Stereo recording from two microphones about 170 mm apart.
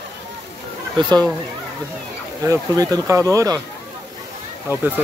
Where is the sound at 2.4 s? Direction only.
20° right (ahead or behind).